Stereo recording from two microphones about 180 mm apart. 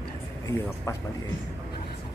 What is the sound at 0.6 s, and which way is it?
Speech, 15° left (ahead or behind).